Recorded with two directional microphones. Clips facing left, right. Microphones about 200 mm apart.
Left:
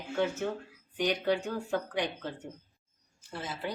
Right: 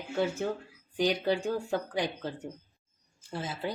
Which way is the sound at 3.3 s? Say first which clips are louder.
Right 3 dB; 30° right (ahead or behind).